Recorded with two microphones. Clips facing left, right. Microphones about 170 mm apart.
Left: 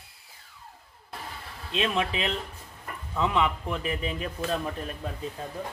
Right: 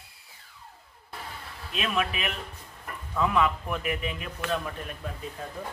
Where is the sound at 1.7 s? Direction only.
25° left (ahead or behind).